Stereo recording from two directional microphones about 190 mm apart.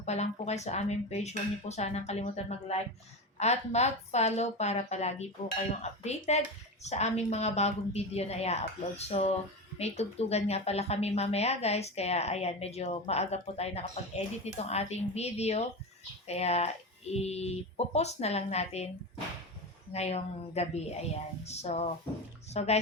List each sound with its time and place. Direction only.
0.0 s a woman's voice: 35° left (ahead or behind)
19.9 s a woman's voice: 35° left (ahead or behind)